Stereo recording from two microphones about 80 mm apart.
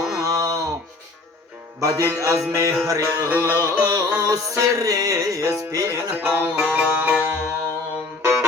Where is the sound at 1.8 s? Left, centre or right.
Right.